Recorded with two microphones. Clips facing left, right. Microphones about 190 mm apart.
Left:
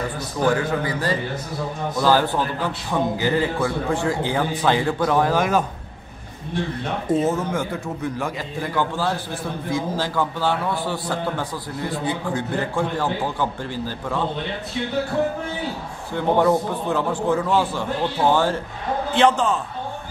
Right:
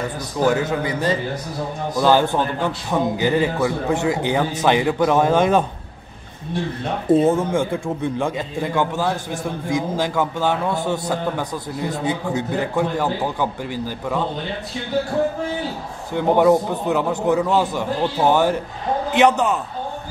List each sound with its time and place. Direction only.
0.5 s a man's voice: 20° right (ahead or behind)
4.8 s a man's voice: 10° right (ahead or behind)
5.1 s a man's voice: 25° right (ahead or behind)
7.1 s a man's voice: 30° right (ahead or behind); by 14.2 s 15° right (ahead or behind)
16.2 s a man's voice: 15° right (ahead or behind)